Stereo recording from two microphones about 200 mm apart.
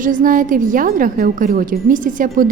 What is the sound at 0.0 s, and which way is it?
A woman's voice, 40° right (ahead or behind).